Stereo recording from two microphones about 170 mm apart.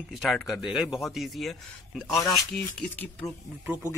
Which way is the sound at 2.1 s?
15° left (ahead or behind).